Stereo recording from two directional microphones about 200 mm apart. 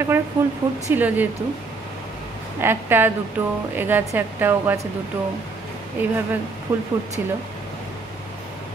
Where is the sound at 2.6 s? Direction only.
10° right (ahead or behind).